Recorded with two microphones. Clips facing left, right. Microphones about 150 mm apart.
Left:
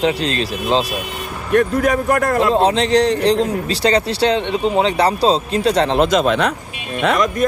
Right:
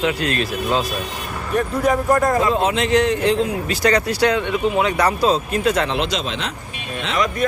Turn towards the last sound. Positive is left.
turn(degrees=50)  # may be behind; listen again after turning